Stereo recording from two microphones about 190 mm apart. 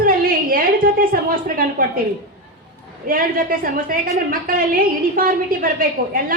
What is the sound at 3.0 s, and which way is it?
A woman's voice, 50° right (ahead or behind).